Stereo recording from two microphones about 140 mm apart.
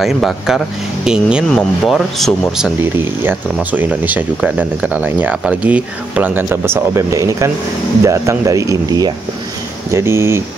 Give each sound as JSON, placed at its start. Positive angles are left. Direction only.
{"t": 0.0, "sound": "speech", "side_deg": 0}
{"t": 2.8, "sound": "speech", "side_deg": -15}